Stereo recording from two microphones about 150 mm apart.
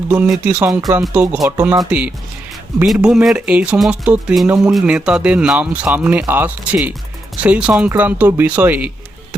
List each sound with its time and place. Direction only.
0.1 s speech: 10° right (ahead or behind)
0.7 s speech: 25° right (ahead or behind)
1.1 s speech: 10° right (ahead or behind)
1.4 s speech: 20° right (ahead or behind)
1.8 s speech: 10° right (ahead or behind)